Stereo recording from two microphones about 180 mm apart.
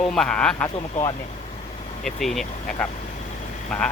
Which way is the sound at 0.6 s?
25° left (ahead or behind).